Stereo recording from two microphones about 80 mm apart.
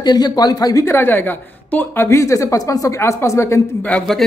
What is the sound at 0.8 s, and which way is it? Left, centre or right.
A woman's voice, left.